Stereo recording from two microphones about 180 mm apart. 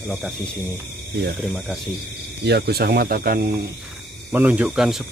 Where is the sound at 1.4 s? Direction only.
Centre (ahead or behind).